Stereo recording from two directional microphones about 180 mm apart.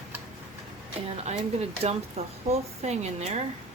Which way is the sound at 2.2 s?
35° right (ahead or behind).